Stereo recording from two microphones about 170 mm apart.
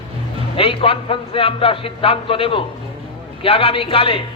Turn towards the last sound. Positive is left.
turn(degrees=35)  # may be behind; listen again after turning